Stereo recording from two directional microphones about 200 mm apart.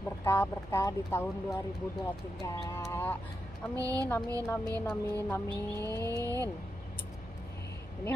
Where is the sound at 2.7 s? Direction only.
10° left (ahead or behind).